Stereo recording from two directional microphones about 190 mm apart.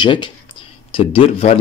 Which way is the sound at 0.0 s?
25° left (ahead or behind).